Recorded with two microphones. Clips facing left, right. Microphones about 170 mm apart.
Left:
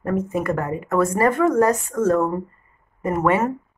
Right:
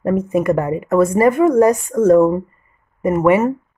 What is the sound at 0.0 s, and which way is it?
A woman's voice, 15° right (ahead or behind).